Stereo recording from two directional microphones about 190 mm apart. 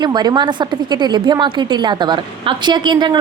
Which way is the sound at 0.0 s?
20° right (ahead or behind).